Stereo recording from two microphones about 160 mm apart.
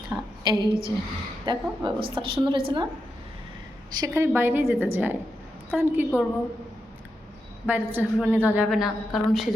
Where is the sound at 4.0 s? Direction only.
20° right (ahead or behind).